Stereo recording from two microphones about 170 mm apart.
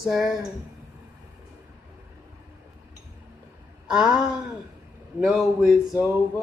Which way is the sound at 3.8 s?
5° right (ahead or behind).